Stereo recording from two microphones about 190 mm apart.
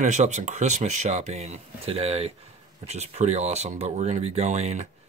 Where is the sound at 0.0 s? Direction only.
40° right (ahead or behind).